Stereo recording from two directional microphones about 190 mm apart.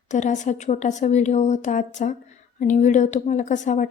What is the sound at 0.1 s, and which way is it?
Speech, 40° left (ahead or behind).